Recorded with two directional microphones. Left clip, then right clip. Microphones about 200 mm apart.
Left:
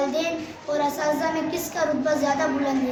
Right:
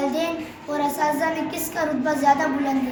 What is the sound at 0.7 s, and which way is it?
A woman's voice, 20° left (ahead or behind).